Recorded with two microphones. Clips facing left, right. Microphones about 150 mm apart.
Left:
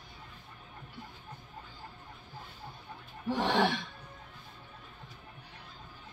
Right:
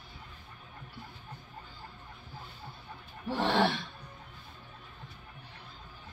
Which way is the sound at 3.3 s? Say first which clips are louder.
Even; 15° left (ahead or behind).